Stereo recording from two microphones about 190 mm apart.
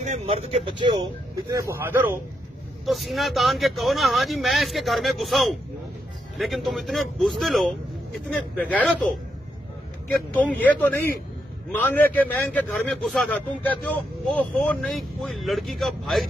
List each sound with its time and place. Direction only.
0.0 s speech: 35° right (ahead or behind); by 2.1 s 10° right (ahead or behind)
2.8 s a man's voice: centre (ahead or behind)
10.3 s a man's voice: 10° left (ahead or behind)